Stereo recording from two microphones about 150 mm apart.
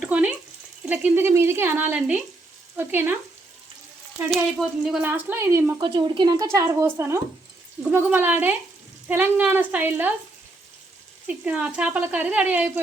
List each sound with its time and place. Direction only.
0.0 s a sound: 10° right (ahead or behind)
0.9 s speech: 15° right (ahead or behind)
4.6 s speech: centre (ahead or behind)
5.0 s speech: 15° right (ahead or behind)
5.8 s speech: 30° right (ahead or behind); by 10.1 s 10° right (ahead or behind)
11.3 s speech: 10° right (ahead or behind)